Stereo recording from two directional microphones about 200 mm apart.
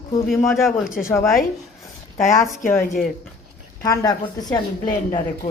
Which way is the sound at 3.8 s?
15° left (ahead or behind).